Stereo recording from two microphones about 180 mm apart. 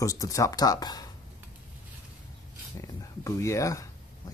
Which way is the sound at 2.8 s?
15° left (ahead or behind).